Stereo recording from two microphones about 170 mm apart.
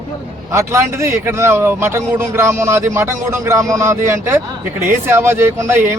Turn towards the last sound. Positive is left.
turn(degrees=-15)  # may be behind; listen again after turning